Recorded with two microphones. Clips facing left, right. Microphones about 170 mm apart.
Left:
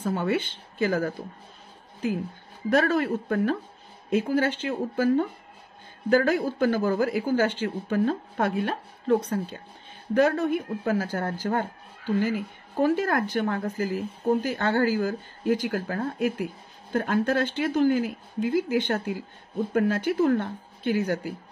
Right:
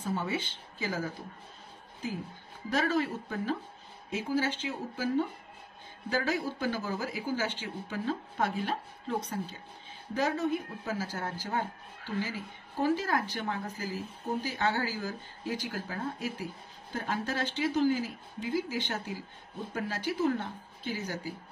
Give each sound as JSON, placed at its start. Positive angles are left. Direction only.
{"t": 0.0, "sound": "speech", "side_deg": 60}
{"t": 2.7, "sound": "speech", "side_deg": 60}